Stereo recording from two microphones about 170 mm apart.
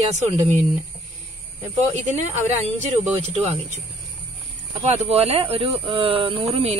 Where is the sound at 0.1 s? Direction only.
40° right (ahead or behind).